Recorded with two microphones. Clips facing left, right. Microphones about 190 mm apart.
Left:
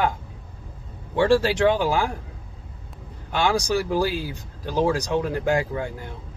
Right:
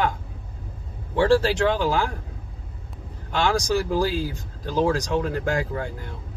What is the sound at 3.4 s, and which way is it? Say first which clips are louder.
Speech: even; 10° left (ahead or behind).